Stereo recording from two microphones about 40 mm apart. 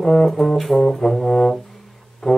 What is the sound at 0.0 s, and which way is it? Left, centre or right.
Brass instrument, centre.